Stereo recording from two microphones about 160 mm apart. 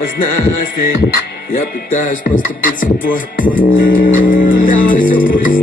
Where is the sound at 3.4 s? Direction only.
60° left (ahead or behind).